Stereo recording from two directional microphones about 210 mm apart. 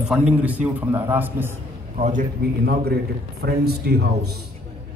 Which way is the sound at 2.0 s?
35° right (ahead or behind).